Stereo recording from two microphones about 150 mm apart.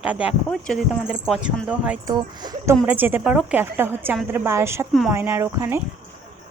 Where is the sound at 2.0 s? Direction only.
30° right (ahead or behind).